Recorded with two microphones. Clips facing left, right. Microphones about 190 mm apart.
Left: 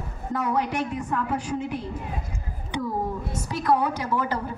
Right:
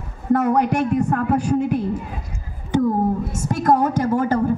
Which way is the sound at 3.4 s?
45° right (ahead or behind).